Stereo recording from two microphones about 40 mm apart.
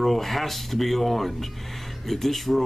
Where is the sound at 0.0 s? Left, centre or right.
Centre.